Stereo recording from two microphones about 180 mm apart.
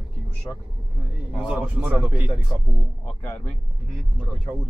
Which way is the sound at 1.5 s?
10° right (ahead or behind).